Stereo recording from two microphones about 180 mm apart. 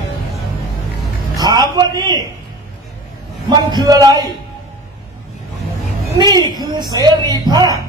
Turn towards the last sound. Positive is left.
turn(degrees=-20)  # may be behind; listen again after turning